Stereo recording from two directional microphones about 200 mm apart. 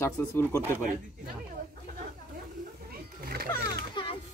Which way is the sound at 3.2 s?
50° right (ahead or behind).